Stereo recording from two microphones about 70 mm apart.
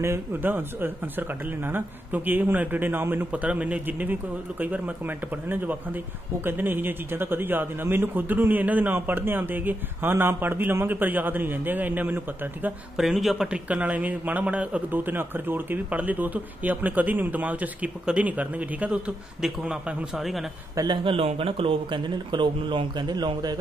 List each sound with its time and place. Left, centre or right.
0.0 s speech: right
3.3 s speech: centre
12.9 s speech: centre
13.7 s speech: right
20.2 s a man's voice: centre
20.7 s speech: right
22.3 s a man's voice: right